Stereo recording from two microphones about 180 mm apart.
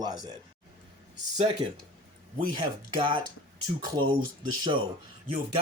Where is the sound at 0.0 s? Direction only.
25° right (ahead or behind).